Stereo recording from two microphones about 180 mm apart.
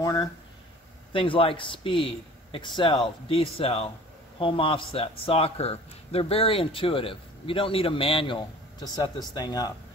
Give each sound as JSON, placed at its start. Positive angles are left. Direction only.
{"t": 0.0, "sound": "speech", "side_deg": 20}
{"t": 1.1, "sound": "speech", "side_deg": 30}